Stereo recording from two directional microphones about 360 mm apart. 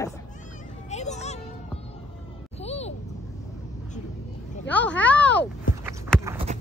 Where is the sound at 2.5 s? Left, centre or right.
Centre.